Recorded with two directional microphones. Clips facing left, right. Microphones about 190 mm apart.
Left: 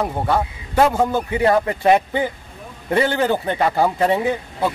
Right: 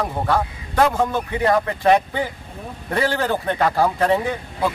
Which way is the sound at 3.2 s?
5° left (ahead or behind).